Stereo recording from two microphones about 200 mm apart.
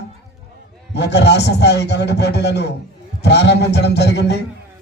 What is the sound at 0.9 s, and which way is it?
Speech, 60° left (ahead or behind).